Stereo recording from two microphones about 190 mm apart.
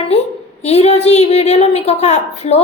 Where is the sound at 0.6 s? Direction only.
35° left (ahead or behind).